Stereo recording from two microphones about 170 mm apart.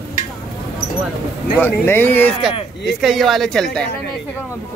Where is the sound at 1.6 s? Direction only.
15° left (ahead or behind).